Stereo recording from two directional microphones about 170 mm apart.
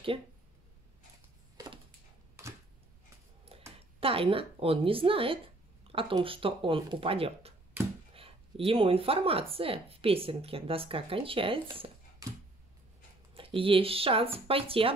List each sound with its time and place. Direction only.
2.4 s a sound: 15° right (ahead or behind)
4.0 s speech: 35° right (ahead or behind)
13.3 s speech: 30° right (ahead or behind)